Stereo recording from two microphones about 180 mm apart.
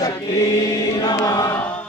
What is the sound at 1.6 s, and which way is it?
Chant, 5° left (ahead or behind).